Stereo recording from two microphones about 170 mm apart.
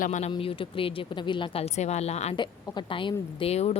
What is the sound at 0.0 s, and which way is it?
Speech, 45° left (ahead or behind).